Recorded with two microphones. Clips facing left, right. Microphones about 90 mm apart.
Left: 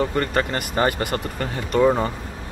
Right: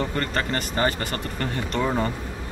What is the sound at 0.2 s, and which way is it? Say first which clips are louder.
Speech: left 3 dB; 15° left (ahead or behind).